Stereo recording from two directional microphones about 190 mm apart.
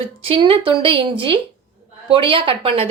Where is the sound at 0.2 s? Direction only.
30° right (ahead or behind).